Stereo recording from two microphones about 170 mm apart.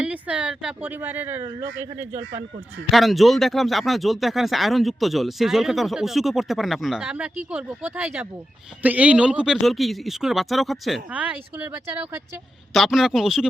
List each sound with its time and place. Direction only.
0.0 s speech: 5° right (ahead or behind)
2.9 s speech: centre (ahead or behind)